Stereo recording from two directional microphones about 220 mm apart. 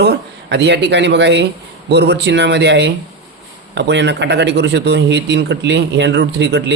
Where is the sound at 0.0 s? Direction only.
50° right (ahead or behind).